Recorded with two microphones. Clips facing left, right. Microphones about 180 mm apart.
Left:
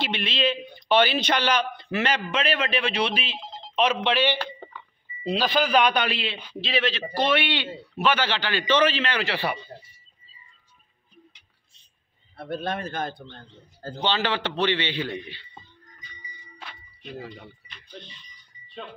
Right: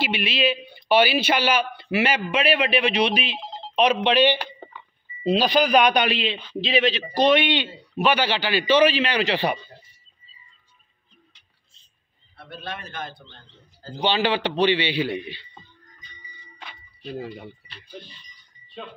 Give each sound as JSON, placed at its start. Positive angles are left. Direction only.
{"t": 0.0, "sound": "a man's voice", "side_deg": -10}
{"t": 12.4, "sound": "a man's voice", "side_deg": 50}
{"t": 13.9, "sound": "a man's voice", "side_deg": -15}
{"t": 17.2, "sound": "a man's voice", "side_deg": -15}